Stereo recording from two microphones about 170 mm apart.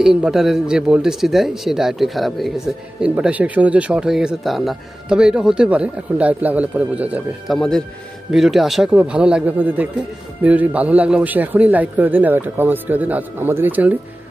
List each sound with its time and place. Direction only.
0.0 s speech: 5° right (ahead or behind)
7.5 s speech: 5° left (ahead or behind)